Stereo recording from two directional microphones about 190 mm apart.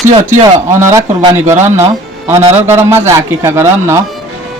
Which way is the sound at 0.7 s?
15° right (ahead or behind).